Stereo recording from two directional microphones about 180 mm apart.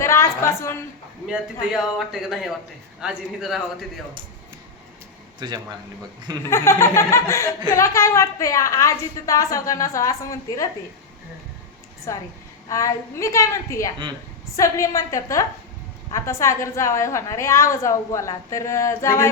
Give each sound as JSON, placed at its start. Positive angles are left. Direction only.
{"t": 0.0, "sound": "a woman's voice", "side_deg": 15}
{"t": 1.7, "sound": "speech", "side_deg": 0}
{"t": 5.4, "sound": "speech", "side_deg": -25}
{"t": 6.4, "sound": "a woman's voice", "side_deg": 15}
{"t": 12.1, "sound": "a woman's voice", "side_deg": 15}